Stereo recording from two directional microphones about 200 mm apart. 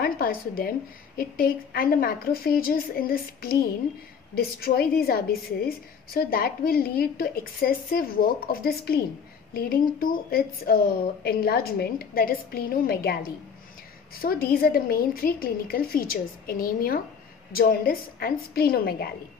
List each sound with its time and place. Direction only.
0.0 s a woman's voice: 50° left (ahead or behind)